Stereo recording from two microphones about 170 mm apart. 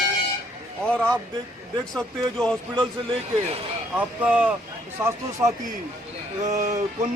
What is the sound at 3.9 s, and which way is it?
Speech, 10° right (ahead or behind).